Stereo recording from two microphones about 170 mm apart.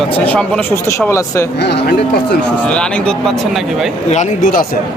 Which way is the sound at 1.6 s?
80° left.